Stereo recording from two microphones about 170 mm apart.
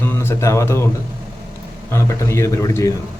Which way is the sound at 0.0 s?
15° left (ahead or behind).